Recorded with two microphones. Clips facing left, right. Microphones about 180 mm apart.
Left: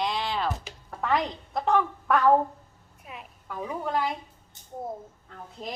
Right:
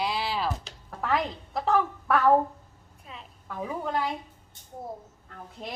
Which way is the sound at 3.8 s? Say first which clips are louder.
Left 2 dB; centre (ahead or behind).